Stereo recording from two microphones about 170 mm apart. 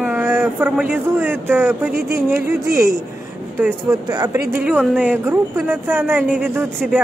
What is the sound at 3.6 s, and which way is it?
Speech, 20° right (ahead or behind).